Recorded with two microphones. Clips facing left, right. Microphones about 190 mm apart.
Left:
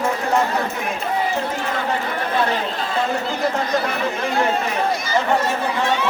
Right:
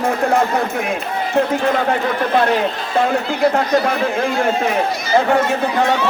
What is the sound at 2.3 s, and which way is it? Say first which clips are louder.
Speech: right 4 dB; 60° right (ahead or behind).